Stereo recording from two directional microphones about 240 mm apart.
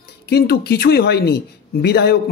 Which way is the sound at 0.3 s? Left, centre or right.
Left.